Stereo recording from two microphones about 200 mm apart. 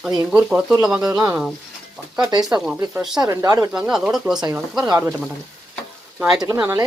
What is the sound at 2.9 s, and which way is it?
Speech, centre (ahead or behind).